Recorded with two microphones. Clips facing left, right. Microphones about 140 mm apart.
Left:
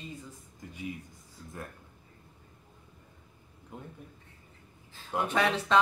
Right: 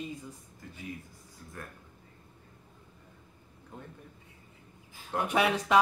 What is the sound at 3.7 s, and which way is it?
Speech, 10° left (ahead or behind).